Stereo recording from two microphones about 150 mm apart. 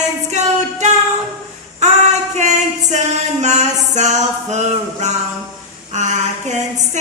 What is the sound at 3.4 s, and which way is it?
Music, 50° right (ahead or behind).